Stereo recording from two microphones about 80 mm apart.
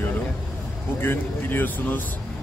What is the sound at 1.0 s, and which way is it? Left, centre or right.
Speech, left.